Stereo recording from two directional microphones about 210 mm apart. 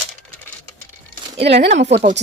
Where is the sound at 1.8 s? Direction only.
55° right (ahead or behind).